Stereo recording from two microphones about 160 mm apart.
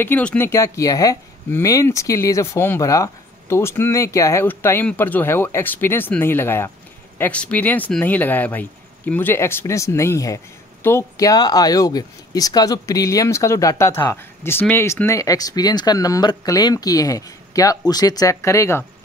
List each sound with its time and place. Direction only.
0.0 s speech: 10° left (ahead or behind)